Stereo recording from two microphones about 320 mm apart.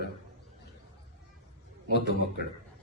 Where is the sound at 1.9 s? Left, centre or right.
Left.